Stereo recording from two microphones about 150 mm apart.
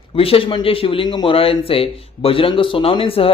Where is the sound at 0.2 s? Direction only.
40° left (ahead or behind).